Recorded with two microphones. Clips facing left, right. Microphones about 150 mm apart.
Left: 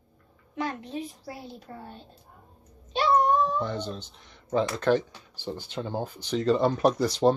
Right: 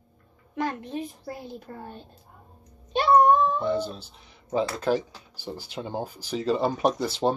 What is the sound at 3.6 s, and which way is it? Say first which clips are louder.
Speech: right 5 dB; 5° right (ahead or behind).